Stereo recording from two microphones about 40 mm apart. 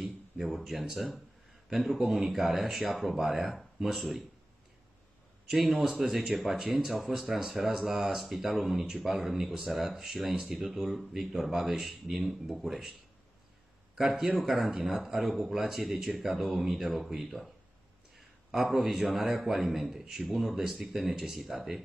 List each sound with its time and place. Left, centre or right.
0.0 s a man's voice: centre
5.5 s a man's voice: centre
13.9 s a man's voice: centre